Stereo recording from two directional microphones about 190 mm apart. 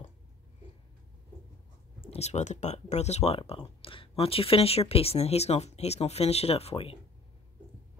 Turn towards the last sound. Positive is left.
turn(degrees=30)  # may be behind; listen again after turning